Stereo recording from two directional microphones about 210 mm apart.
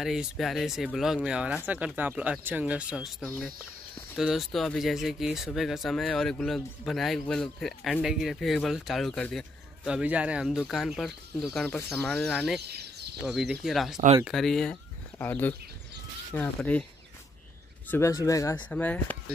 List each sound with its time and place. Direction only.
0.0 s speech: centre (ahead or behind)
12.6 s a sound: 50° right (ahead or behind)
13.2 s speech: centre (ahead or behind)
17.8 s speech: 10° left (ahead or behind)